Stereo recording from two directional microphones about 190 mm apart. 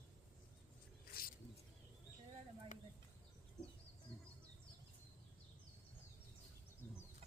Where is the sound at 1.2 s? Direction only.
50° left (ahead or behind).